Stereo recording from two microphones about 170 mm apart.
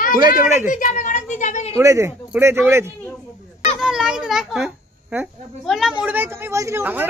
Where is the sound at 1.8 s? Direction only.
15° right (ahead or behind).